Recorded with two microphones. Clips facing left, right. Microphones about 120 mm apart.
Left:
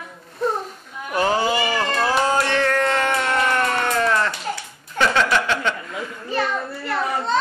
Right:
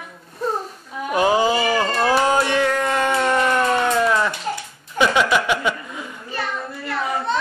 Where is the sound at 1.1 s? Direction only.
15° right (ahead or behind).